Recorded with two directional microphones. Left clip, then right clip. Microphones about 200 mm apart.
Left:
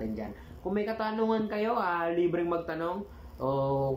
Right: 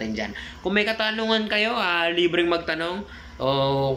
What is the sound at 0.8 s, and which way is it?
Speech, 15° right (ahead or behind).